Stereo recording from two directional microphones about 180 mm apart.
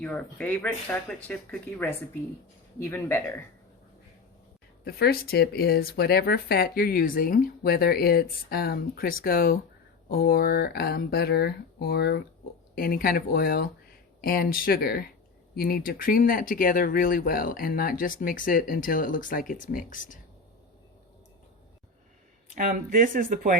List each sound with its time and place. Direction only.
0.0 s speech: 5° left (ahead or behind)
4.9 s speech: 60° left (ahead or behind)
22.5 s speech: 50° right (ahead or behind)